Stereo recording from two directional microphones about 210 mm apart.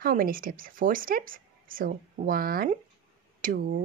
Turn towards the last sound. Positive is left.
turn(degrees=-40)  # may be behind; listen again after turning